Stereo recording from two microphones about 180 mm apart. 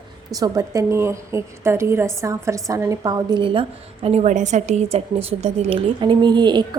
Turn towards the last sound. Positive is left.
turn(degrees=-25)  # may be behind; listen again after turning